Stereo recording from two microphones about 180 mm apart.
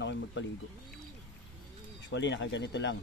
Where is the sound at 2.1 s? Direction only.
80° left.